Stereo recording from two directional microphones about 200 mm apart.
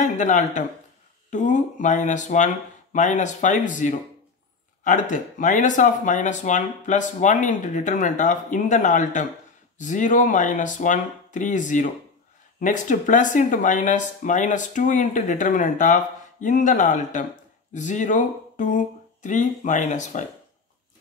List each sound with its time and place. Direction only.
0.0 s speech: 40° left (ahead or behind)